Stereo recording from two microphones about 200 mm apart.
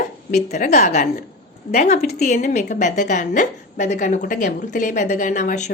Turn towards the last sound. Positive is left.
turn(degrees=35)  # may be behind; listen again after turning